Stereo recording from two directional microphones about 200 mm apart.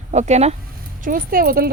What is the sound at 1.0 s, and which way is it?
Speech, 45° right (ahead or behind).